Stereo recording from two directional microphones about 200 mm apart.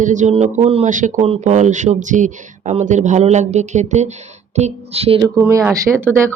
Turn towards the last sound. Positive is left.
turn(degrees=-15)  # may be behind; listen again after turning